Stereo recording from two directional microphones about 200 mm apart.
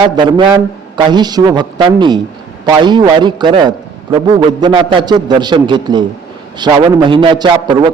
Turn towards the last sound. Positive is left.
turn(degrees=-20)  # may be behind; listen again after turning